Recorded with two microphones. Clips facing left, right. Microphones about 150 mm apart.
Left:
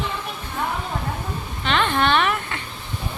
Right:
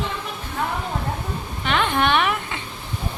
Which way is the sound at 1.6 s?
10° right (ahead or behind).